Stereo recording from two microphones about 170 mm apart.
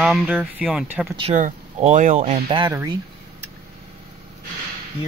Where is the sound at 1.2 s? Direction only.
45° right (ahead or behind).